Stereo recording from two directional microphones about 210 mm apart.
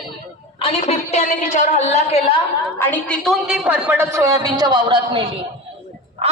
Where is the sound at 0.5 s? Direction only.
30° left (ahead or behind).